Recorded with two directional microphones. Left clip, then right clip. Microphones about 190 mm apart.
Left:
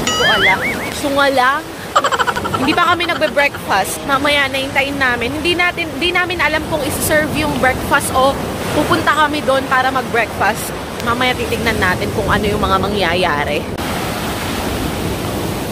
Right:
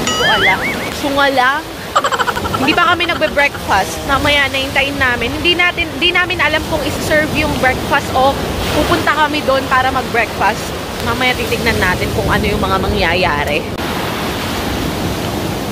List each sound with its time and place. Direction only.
0.0 s speech: centre (ahead or behind)